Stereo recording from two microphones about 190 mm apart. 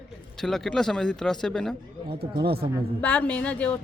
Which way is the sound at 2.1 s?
55° right (ahead or behind).